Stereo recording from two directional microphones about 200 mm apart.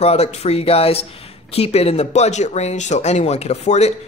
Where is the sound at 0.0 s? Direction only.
30° left (ahead or behind).